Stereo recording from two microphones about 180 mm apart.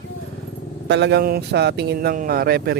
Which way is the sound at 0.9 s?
70° right (ahead or behind).